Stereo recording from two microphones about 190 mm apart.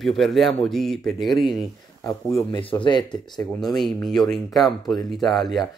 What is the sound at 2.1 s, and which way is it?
Speech, 20° left (ahead or behind).